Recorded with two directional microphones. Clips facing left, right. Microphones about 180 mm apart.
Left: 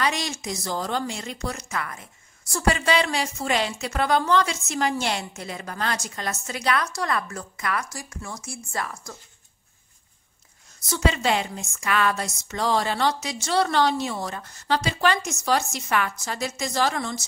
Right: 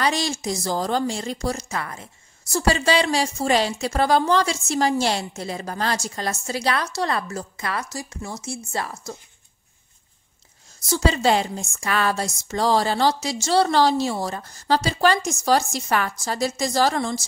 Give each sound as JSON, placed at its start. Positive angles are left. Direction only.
{"t": 0.0, "sound": "a woman's voice", "side_deg": -30}
{"t": 10.9, "sound": "a woman's voice", "side_deg": -35}